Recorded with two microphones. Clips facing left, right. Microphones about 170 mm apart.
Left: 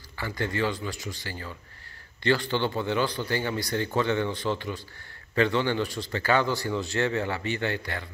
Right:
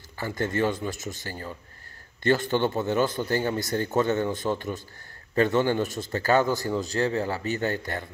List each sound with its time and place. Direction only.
0.4 s a man's voice: 45° right (ahead or behind)